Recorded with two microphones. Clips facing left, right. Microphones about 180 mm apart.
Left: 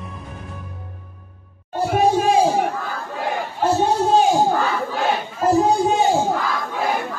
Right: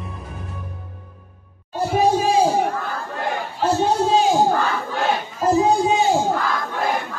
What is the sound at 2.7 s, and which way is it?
Battle cry, centre (ahead or behind).